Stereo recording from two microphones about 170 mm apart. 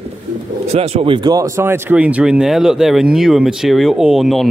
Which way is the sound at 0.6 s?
40° right (ahead or behind).